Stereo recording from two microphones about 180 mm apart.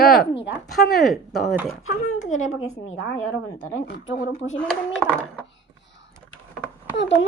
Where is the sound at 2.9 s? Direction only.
90° left.